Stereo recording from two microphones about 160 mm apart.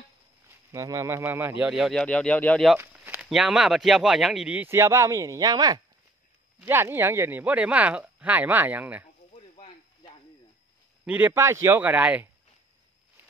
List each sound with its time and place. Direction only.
0.5 s speech: 15° right (ahead or behind)
1.6 s speech: 5° right (ahead or behind)
2.8 s speech: 10° right (ahead or behind)
11.1 s speech: 10° right (ahead or behind)